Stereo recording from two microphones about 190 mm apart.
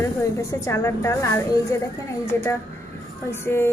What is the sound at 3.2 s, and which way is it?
Speech, 10° left (ahead or behind).